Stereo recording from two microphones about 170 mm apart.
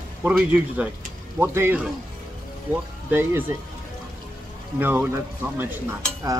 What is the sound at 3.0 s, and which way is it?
Speech, 10° right (ahead or behind).